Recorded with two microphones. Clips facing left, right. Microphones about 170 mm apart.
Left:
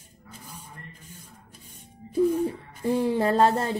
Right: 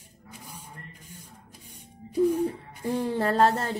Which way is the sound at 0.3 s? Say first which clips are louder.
Even; 15° right (ahead or behind).